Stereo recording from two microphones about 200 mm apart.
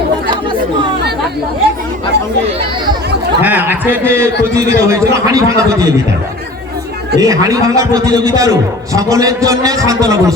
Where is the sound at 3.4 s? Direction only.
10° right (ahead or behind).